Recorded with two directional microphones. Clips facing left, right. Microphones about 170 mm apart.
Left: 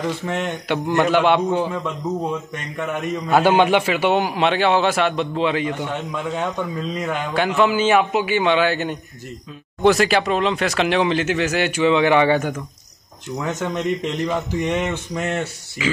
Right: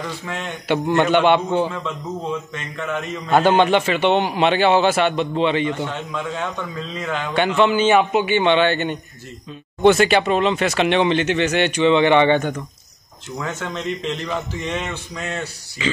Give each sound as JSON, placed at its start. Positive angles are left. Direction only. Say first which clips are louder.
{"t": 0.0, "sound": "speech", "louder": "left 5 dB", "side_deg": 20}
{"t": 0.7, "sound": "a man's voice", "louder": "right 2 dB", "side_deg": 0}
{"t": 1.7, "sound": "a man's voice", "louder": "left 3 dB", "side_deg": 15}
{"t": 5.9, "sound": "speech", "louder": "left 1 dB", "side_deg": 15}
{"t": 7.3, "sound": "a man's voice", "louder": "right 1 dB", "side_deg": 0}
{"t": 13.4, "sound": "speech", "louder": "left 3 dB", "side_deg": 15}
{"t": 15.8, "sound": "speech", "louder": "left 1 dB", "side_deg": 5}